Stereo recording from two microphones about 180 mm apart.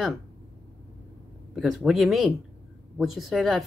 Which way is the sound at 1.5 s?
Centre (ahead or behind).